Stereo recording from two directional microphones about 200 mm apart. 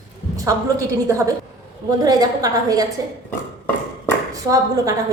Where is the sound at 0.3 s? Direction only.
15° right (ahead or behind).